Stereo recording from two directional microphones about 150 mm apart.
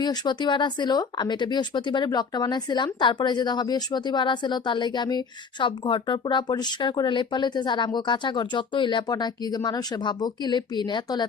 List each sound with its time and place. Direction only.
0.0 s speech: 30° left (ahead or behind)